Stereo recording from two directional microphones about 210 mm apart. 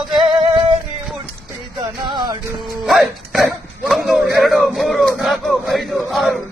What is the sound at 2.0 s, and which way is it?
Music, 20° right (ahead or behind).